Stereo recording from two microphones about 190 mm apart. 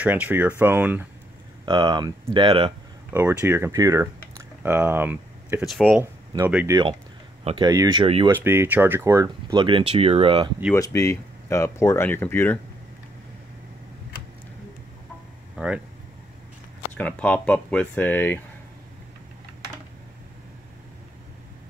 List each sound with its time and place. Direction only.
0.0 s speech: 10° right (ahead or behind)
1.7 s speech: 25° right (ahead or behind)
3.1 s speech: 15° right (ahead or behind)
6.3 s speech: 10° right (ahead or behind)
7.4 s speech: 25° right (ahead or behind)
8.3 s speech: 10° right (ahead or behind); by 10.5 s 30° right (ahead or behind)
10.7 s speech: 15° left (ahead or behind)
15.5 s a sound: 5° right (ahead or behind)
16.9 s speech: 5° left (ahead or behind)